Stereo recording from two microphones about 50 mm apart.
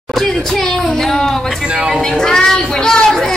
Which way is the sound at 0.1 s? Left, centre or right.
Centre.